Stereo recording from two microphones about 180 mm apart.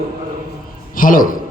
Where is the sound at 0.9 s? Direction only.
50° left (ahead or behind).